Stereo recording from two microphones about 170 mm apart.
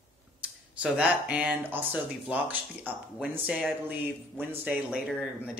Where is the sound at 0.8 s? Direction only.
5° right (ahead or behind).